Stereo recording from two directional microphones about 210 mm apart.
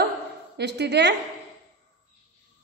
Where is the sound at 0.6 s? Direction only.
55° right (ahead or behind).